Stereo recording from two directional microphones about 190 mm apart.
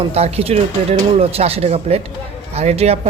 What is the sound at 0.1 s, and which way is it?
A man's voice, 35° right (ahead or behind).